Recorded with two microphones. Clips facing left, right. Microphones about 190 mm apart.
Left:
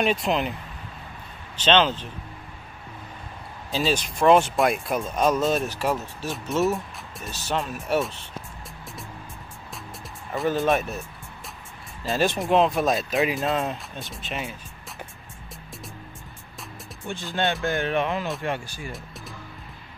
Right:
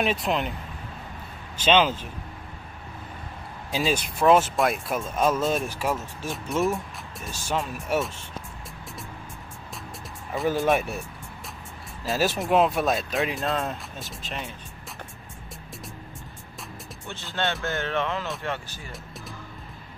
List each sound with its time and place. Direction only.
0.0 s speech: centre (ahead or behind)
1.6 s speech: 10° right (ahead or behind)
3.7 s speech: 10° right (ahead or behind)
7.3 s speech: 10° right (ahead or behind)
10.6 s speech: 10° right (ahead or behind)
12.0 s speech: 5° right (ahead or behind)
17.1 s speech: 15° left (ahead or behind)